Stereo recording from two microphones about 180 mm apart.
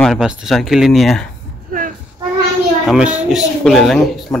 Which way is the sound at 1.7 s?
50° right (ahead or behind).